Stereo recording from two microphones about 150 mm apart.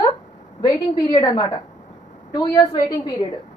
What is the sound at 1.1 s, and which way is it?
A woman's voice, 30° left (ahead or behind).